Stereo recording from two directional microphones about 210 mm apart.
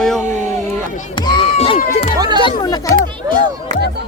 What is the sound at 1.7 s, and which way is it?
Speech, 40° left (ahead or behind).